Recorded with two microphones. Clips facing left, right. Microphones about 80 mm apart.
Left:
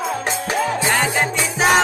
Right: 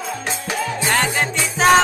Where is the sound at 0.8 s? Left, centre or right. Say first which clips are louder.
Left 1 dB; centre.